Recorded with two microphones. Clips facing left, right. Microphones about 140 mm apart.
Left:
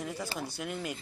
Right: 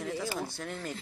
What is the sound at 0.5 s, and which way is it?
Speech, 15° left (ahead or behind).